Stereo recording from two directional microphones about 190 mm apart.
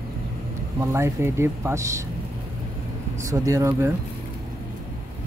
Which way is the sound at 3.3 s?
15° right (ahead or behind).